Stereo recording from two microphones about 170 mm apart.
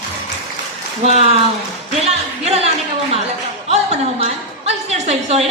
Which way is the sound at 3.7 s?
40° right (ahead or behind).